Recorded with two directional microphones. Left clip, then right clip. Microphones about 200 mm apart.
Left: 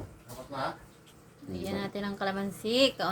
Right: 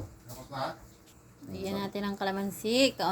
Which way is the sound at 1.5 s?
20° right (ahead or behind).